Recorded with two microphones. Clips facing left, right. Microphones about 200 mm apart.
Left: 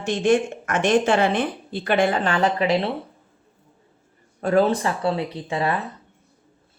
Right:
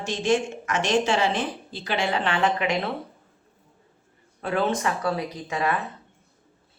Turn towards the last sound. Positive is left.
turn(degrees=30)  # may be behind; listen again after turning